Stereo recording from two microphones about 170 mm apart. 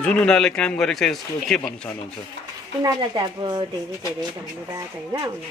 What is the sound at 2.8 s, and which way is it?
Speech, 25° right (ahead or behind).